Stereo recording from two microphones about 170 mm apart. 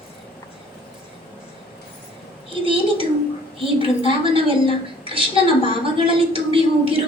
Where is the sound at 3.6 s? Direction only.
30° right (ahead or behind).